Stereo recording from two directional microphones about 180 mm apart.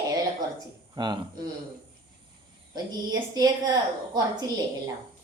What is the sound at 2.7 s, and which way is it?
A woman's voice, 20° right (ahead or behind).